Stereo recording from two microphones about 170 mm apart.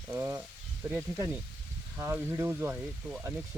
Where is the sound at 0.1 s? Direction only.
15° right (ahead or behind).